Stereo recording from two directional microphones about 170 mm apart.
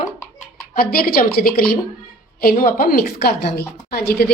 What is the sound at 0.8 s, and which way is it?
A woman's voice, 60° left (ahead or behind).